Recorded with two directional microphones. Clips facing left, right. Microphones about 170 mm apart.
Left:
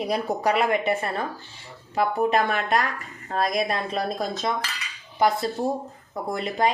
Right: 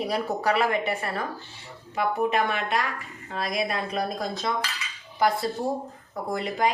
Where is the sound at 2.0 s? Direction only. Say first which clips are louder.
Left 2 dB; 40° left (ahead or behind).